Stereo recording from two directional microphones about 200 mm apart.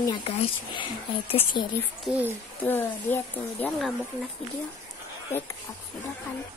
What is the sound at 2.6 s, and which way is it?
Speech, 10° left (ahead or behind).